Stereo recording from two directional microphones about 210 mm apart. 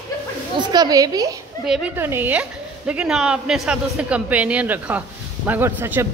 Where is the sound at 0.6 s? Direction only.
20° right (ahead or behind).